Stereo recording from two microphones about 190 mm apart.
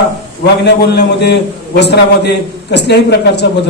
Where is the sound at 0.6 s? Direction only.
60° left (ahead or behind).